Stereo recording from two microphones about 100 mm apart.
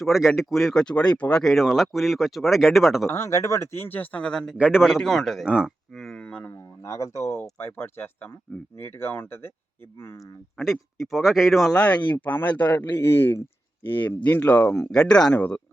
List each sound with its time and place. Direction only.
0.0 s speech: centre (ahead or behind)
3.1 s speech: 30° left (ahead or behind); by 5.5 s centre (ahead or behind)
5.5 s speech: 10° right (ahead or behind)
5.9 s speech: 5° left (ahead or behind)
6.5 s speech: 30° left (ahead or behind)
10.6 s speech: centre (ahead or behind)
11.8 s speech: 15° left (ahead or behind)